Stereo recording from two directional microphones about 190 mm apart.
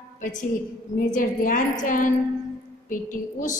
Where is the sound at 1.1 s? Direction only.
45° left (ahead or behind).